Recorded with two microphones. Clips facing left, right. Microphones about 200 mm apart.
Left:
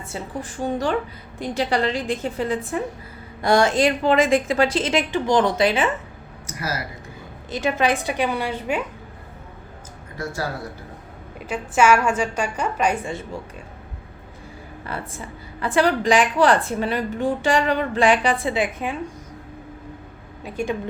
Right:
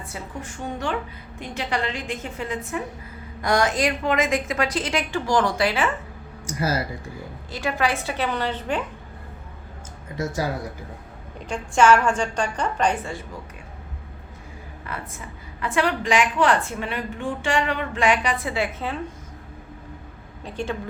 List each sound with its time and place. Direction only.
0.0 s a woman's voice: 30° left (ahead or behind)
6.5 s speech: 30° right (ahead or behind)
7.5 s a woman's voice: 20° left (ahead or behind)
11.3 s a woman's voice: 5° left (ahead or behind)
14.9 s a woman's voice: 30° left (ahead or behind); by 18.9 s 15° left (ahead or behind)
20.4 s a woman's voice: 10° left (ahead or behind)